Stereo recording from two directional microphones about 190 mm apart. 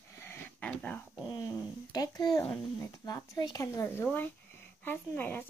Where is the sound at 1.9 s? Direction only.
20° left (ahead or behind).